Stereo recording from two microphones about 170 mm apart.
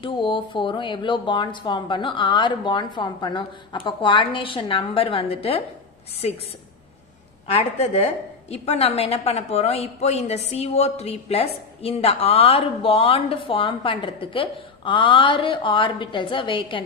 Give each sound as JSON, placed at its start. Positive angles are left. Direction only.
{"t": 0.0, "sound": "speech", "side_deg": 30}
{"t": 7.5, "sound": "a woman's voice", "side_deg": 40}